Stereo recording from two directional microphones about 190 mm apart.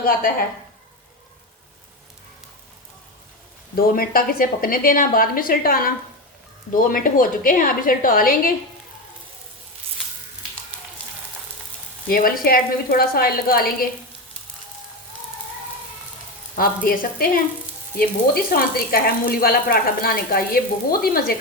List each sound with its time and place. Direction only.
0.0 s speech: 50° left (ahead or behind)
3.8 s speech: 50° left (ahead or behind)
12.0 s speech: 50° left (ahead or behind)
16.6 s speech: 50° left (ahead or behind)